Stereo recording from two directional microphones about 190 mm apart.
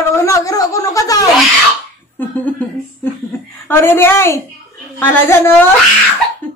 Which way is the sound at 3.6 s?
10° left (ahead or behind).